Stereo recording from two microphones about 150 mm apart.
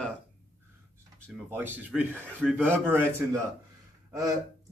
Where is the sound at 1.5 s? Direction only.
15° right (ahead or behind).